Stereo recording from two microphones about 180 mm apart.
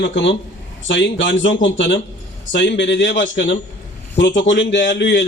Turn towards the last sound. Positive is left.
turn(degrees=85)